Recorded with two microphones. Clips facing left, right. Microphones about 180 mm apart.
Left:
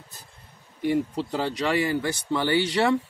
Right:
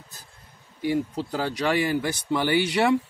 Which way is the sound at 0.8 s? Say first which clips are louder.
Left 1 dB; 5° right (ahead or behind).